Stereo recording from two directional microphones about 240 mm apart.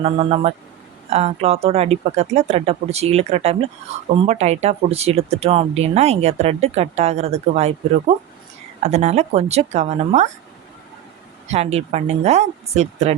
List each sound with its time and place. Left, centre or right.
0.0 s speech: right
11.5 s speech: right